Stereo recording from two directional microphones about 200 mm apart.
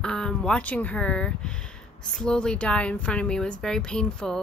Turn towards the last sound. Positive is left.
turn(degrees=5)  # may be behind; listen again after turning